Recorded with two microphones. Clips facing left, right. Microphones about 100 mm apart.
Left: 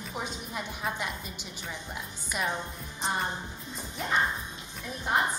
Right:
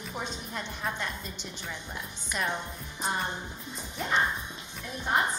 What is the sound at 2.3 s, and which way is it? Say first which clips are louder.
Speech: even; 5° left (ahead or behind).